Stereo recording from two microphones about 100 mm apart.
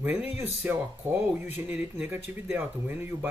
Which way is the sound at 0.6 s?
20° right (ahead or behind).